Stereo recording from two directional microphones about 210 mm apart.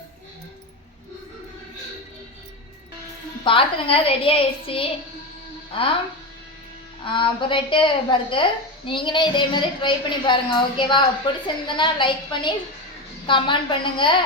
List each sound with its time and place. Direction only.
3.4 s a woman's voice: 25° left (ahead or behind)
7.0 s a woman's voice: 25° left (ahead or behind)